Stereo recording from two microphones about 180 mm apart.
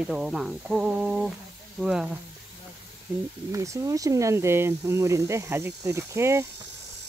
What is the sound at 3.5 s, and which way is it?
Speech, 15° right (ahead or behind).